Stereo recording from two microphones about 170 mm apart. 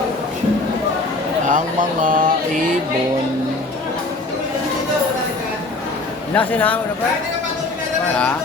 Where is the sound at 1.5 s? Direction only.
50° right (ahead or behind).